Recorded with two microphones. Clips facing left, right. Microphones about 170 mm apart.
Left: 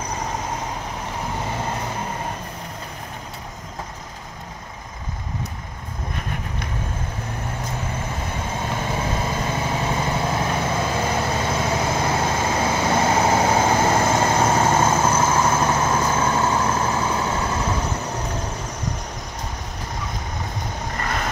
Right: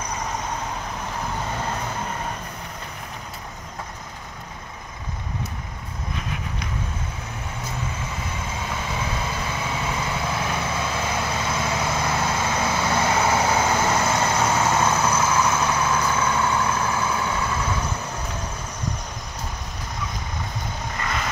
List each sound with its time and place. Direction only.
8.8 s vehicle: 40° left (ahead or behind)
13.9 s vehicle: 50° left (ahead or behind)
14.2 s vehicle: 30° left (ahead or behind)
15.0 s vehicle: 50° left (ahead or behind)
16.7 s vehicle: 25° left (ahead or behind)
17.2 s vehicle: 40° left (ahead or behind)